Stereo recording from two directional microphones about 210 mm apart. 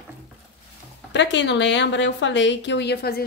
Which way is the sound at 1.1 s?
55° left (ahead or behind).